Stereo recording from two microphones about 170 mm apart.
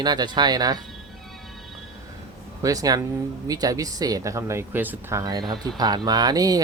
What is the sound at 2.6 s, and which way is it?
Speech, 20° right (ahead or behind).